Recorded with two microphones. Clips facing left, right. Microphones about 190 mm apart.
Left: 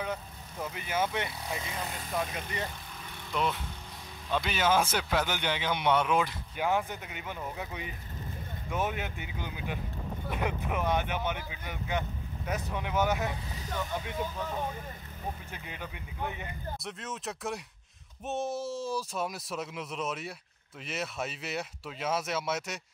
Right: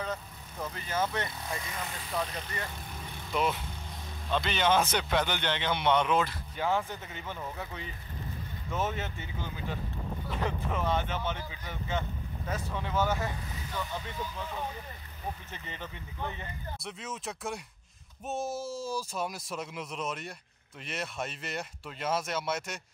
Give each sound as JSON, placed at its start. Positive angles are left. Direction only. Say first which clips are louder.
{"t": 0.0, "sound": "speech", "louder": "left 1 dB", "side_deg": 10}
{"t": 4.3, "sound": "speech", "louder": "right 1 dB", "side_deg": 10}
{"t": 15.5, "sound": "speech", "louder": "left 1 dB", "side_deg": 10}
{"t": 16.8, "sound": "speech", "louder": "right 2 dB", "side_deg": 0}